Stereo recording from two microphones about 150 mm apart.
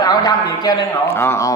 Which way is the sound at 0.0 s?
25° left (ahead or behind).